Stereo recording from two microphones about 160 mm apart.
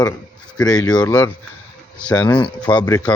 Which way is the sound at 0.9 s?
10° left (ahead or behind).